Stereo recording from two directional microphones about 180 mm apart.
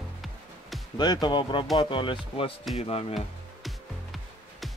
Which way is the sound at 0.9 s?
25° left (ahead or behind).